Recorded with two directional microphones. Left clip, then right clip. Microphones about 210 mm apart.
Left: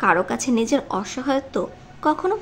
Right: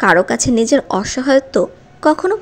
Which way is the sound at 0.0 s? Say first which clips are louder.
Right 7 dB; 25° right (ahead or behind).